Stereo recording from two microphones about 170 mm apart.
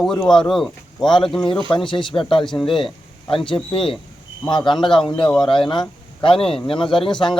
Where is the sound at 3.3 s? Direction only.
30° left (ahead or behind).